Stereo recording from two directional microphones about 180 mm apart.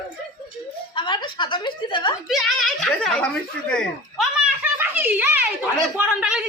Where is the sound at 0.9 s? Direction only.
25° left (ahead or behind).